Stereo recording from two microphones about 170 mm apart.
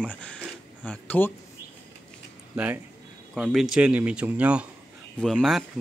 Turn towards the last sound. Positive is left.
turn(degrees=0)  # may be behind; listen again after turning